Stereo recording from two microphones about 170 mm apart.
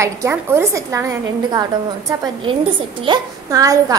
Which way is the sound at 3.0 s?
25° right (ahead or behind).